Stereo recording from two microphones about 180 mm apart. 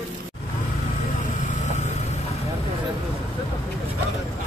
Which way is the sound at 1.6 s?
40° left (ahead or behind).